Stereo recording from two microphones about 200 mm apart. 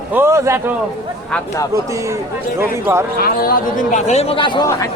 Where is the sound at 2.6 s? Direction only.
10° right (ahead or behind).